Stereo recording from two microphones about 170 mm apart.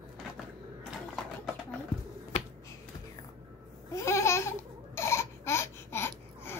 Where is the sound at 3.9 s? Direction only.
15° left (ahead or behind).